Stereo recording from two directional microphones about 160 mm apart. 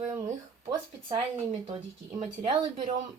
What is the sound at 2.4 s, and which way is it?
Speech, 35° right (ahead or behind).